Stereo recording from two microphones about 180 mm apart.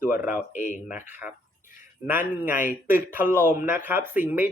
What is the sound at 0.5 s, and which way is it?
Speech, 45° left (ahead or behind).